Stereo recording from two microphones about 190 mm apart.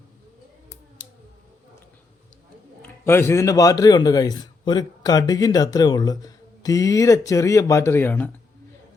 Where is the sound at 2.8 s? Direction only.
10° left (ahead or behind).